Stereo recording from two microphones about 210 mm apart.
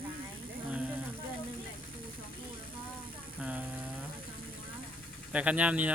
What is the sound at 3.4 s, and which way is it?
Speech, 5° right (ahead or behind).